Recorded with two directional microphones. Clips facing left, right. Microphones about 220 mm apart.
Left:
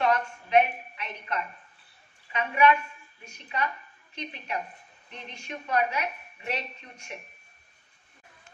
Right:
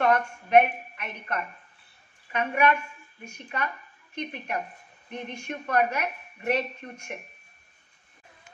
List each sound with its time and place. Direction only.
0.0 s a woman's voice: 55° right (ahead or behind)